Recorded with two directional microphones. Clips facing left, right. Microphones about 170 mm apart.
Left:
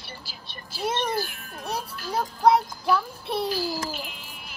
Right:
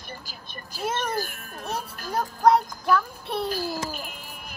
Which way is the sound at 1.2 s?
40° right (ahead or behind).